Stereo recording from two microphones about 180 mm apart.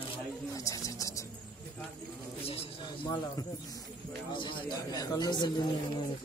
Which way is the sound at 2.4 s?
30° left (ahead or behind).